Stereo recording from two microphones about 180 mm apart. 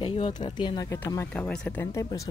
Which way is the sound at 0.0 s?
30° left (ahead or behind).